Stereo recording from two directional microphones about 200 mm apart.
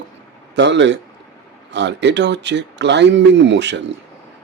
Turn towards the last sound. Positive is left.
turn(degrees=-60)  # may be behind; listen again after turning